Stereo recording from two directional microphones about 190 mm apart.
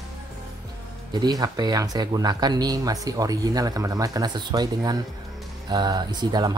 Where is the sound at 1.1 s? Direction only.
20° right (ahead or behind).